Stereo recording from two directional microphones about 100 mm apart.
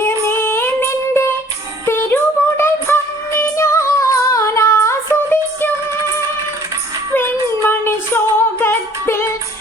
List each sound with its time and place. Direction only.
0.0 s a sound: 25° left (ahead or behind)
1.9 s music: 20° left (ahead or behind)
7.1 s female singing: 20° left (ahead or behind)